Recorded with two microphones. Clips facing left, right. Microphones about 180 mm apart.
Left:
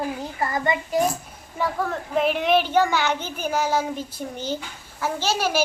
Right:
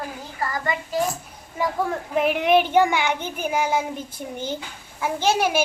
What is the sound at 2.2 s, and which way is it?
Child singing, 10° right (ahead or behind).